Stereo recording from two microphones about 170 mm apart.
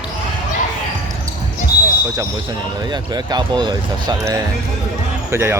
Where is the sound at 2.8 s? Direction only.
25° right (ahead or behind).